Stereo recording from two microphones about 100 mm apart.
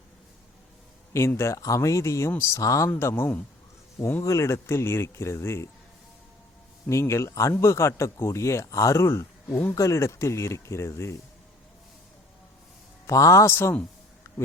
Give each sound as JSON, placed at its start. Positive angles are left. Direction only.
{"t": 1.1, "sound": "speech", "side_deg": 25}
{"t": 6.8, "sound": "speech", "side_deg": 30}
{"t": 13.1, "sound": "speech", "side_deg": 30}